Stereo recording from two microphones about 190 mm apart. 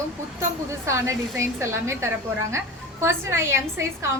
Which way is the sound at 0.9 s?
15° right (ahead or behind).